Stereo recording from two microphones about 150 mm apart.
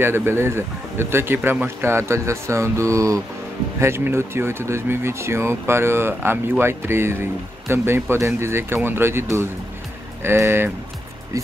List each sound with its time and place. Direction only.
0.0 s speech: 15° right (ahead or behind)